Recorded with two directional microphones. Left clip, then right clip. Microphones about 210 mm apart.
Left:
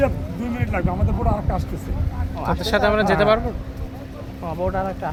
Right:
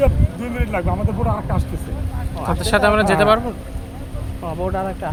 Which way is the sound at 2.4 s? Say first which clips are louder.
Right 3 dB; 15° right (ahead or behind).